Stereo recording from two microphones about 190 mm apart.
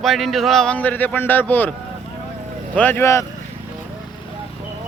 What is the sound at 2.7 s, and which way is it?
Speech, 10° left (ahead or behind).